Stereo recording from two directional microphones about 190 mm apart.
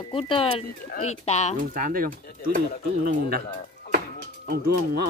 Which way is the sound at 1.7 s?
45° right (ahead or behind).